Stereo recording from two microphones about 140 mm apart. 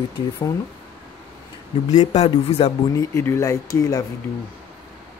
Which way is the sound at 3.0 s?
20° left (ahead or behind).